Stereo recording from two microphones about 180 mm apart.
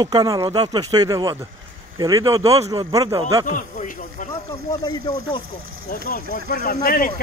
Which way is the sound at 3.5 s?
45° left (ahead or behind).